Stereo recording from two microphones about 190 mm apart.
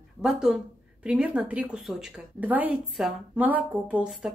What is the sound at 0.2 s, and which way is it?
A woman's voice, 5° right (ahead or behind).